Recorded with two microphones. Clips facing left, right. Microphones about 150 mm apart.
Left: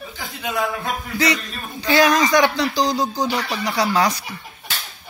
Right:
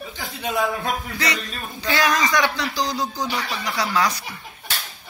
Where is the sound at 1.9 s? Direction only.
35° left (ahead or behind).